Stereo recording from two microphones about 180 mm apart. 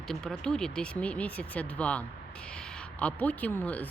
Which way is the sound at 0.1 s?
5° left (ahead or behind).